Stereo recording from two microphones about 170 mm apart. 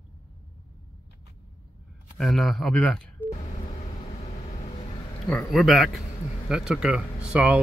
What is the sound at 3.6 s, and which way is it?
Vehicle, 40° left (ahead or behind).